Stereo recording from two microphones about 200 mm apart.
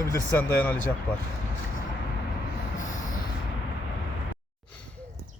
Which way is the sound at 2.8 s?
40° left (ahead or behind).